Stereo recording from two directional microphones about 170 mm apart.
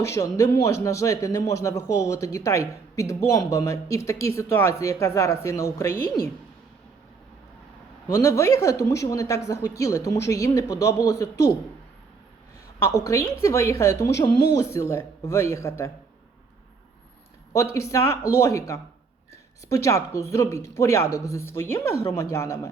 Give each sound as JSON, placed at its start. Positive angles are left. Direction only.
{"t": 0.0, "sound": "speech", "side_deg": 20}
{"t": 1.8, "sound": "speech", "side_deg": 90}
{"t": 2.0, "sound": "speech", "side_deg": 20}
{"t": 8.0, "sound": "speech", "side_deg": 15}
{"t": 12.8, "sound": "speech", "side_deg": 15}
{"t": 17.5, "sound": "speech", "side_deg": 15}